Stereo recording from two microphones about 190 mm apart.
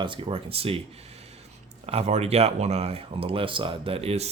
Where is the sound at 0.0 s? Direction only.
25° right (ahead or behind).